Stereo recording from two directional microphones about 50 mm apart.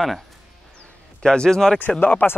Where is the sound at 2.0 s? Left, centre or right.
Left.